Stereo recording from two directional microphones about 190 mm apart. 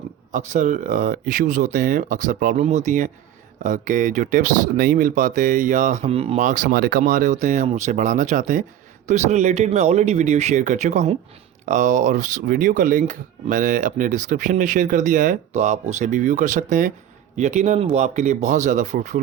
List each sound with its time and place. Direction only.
0.3 s speech: 40° right (ahead or behind)